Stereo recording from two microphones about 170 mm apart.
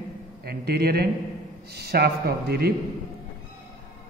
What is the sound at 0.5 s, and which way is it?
A man's voice, 70° right (ahead or behind).